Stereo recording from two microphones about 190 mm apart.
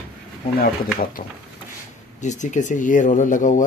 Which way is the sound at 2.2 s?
40° left (ahead or behind).